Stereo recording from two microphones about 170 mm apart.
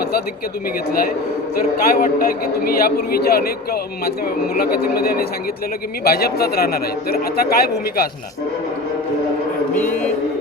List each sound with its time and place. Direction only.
1.8 s a man's voice: 60° left (ahead or behind)
9.7 s music: 10° left (ahead or behind)